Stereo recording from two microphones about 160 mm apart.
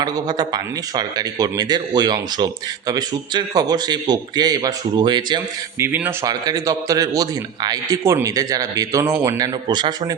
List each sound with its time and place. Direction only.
0.0 s a man's voice: 25° right (ahead or behind)
5.8 s a man's voice: 15° right (ahead or behind)